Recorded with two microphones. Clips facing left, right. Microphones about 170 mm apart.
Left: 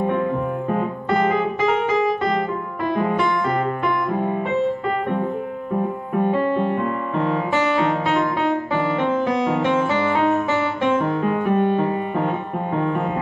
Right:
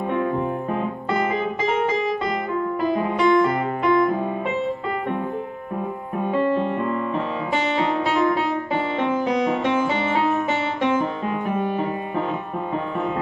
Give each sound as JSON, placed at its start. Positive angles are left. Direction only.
{"t": 11.0, "sound": "music", "side_deg": 65}